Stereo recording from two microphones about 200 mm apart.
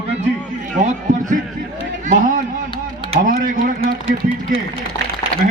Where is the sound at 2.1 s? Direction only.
40° right (ahead or behind).